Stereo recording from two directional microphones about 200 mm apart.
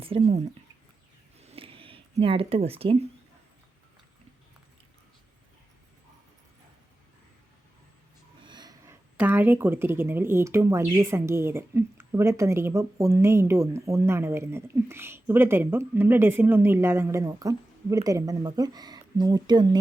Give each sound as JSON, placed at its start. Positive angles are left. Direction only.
{"t": 0.2, "sound": "speech", "side_deg": -35}
{"t": 1.4, "sound": "a sound", "side_deg": -30}
{"t": 8.4, "sound": "snort", "side_deg": -20}
{"t": 9.1, "sound": "speech", "side_deg": -10}